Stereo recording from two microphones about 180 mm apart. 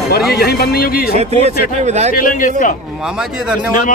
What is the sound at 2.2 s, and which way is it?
Speech, 50° left (ahead or behind).